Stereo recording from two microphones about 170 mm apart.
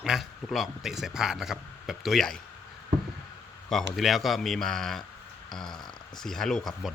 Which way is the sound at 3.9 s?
Centre (ahead or behind).